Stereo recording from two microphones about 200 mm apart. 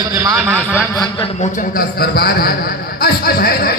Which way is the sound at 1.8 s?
50° left (ahead or behind).